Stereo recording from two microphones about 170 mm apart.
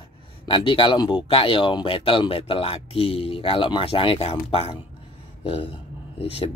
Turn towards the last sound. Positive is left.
turn(degrees=35)  # may be behind; listen again after turning